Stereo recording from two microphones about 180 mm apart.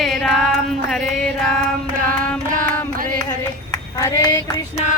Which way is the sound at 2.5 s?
50° right (ahead or behind).